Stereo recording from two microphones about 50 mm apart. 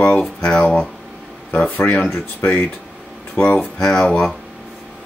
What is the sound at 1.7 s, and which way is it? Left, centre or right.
Speech, left.